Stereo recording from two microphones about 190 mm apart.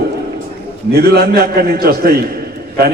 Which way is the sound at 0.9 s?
55° right (ahead or behind).